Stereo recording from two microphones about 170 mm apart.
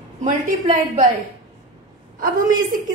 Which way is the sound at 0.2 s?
50° right (ahead or behind).